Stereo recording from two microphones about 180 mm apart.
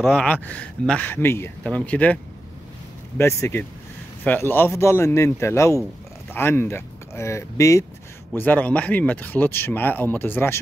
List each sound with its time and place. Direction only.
0.1 s speech: 10° left (ahead or behind)
3.2 s speech: 15° left (ahead or behind)